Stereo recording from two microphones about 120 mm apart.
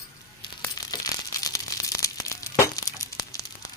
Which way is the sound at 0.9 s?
30° left (ahead or behind).